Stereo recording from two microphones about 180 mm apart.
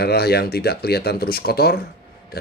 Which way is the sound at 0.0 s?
60° left (ahead or behind).